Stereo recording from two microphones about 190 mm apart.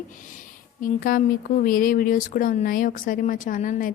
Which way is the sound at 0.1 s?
45° left (ahead or behind).